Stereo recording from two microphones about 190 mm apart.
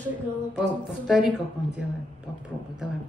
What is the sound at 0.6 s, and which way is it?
Speech, 5° right (ahead or behind).